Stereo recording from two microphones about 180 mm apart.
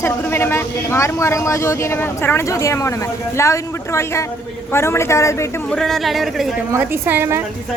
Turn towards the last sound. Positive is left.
turn(degrees=-10)  # may be behind; listen again after turning